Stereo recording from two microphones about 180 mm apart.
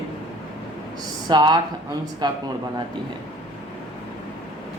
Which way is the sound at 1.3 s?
25° right (ahead or behind).